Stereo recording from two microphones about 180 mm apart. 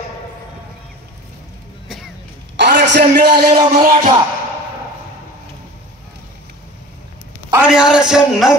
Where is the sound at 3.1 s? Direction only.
60° right (ahead or behind).